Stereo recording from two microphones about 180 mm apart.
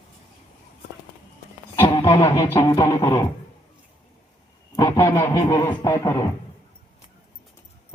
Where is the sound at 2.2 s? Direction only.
15° left (ahead or behind).